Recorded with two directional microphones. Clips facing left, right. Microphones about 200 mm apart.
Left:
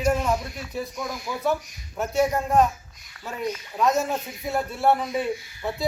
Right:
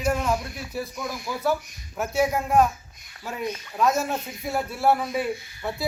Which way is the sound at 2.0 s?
5° right (ahead or behind).